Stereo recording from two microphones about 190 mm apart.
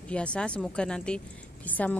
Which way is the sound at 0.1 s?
5° left (ahead or behind).